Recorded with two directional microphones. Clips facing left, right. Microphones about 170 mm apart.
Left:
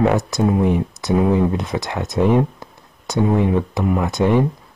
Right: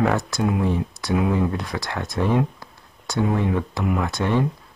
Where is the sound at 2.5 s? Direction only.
20° left (ahead or behind).